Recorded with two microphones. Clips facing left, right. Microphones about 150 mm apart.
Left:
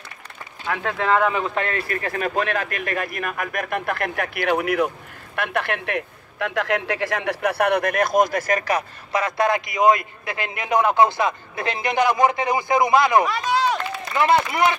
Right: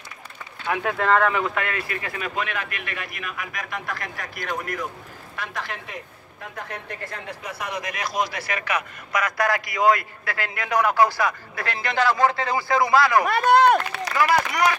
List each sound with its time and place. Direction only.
0.9 s speech: 5° left (ahead or behind)
1.2 s speech: 20° left (ahead or behind)
13.3 s run: 55° right (ahead or behind)
14.1 s a man's voice: 25° left (ahead or behind)